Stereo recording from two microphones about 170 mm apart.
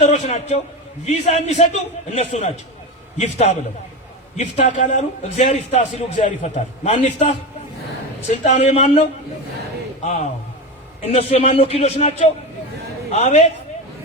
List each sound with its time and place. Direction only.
0.0 s a man's voice: 40° left (ahead or behind)